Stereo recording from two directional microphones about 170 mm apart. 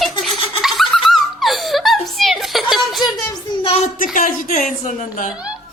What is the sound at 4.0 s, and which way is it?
Speech, 55° left (ahead or behind).